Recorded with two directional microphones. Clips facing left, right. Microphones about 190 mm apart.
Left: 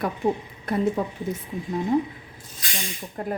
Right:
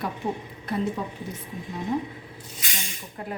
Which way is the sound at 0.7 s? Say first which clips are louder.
Left 3 dB; 50° left (ahead or behind).